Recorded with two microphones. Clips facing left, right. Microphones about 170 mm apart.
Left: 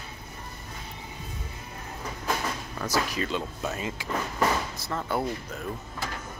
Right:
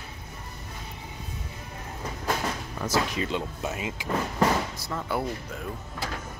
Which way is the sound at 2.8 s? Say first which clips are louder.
Right 1 dB; 25° right (ahead or behind).